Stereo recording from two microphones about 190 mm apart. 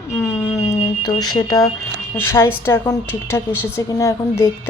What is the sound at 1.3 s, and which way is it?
A woman's voice, 20° left (ahead or behind).